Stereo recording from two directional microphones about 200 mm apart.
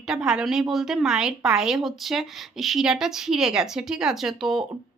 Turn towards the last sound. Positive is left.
turn(degrees=0)  # may be behind; listen again after turning